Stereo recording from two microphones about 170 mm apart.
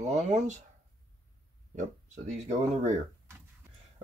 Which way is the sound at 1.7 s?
45° right (ahead or behind).